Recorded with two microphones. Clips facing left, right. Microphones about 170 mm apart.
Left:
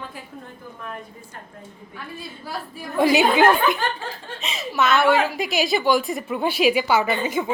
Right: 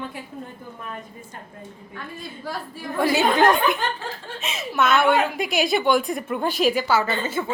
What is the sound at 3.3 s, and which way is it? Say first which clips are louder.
A woman's voice: left 1 dB; 5° left (ahead or behind).